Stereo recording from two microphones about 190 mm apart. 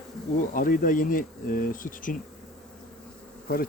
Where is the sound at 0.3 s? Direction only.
45° left (ahead or behind).